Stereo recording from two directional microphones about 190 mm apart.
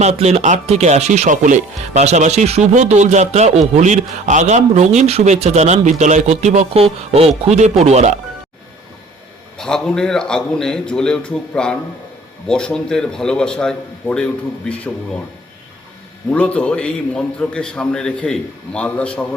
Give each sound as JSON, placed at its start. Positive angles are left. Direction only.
{"t": 0.0, "sound": "speech", "side_deg": -35}
{"t": 9.6, "sound": "a man's voice", "side_deg": 5}
{"t": 16.3, "sound": "a man's voice", "side_deg": 5}